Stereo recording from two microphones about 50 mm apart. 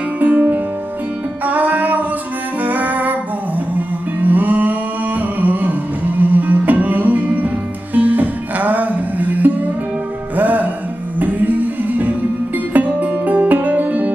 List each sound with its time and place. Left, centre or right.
0.2 s music: right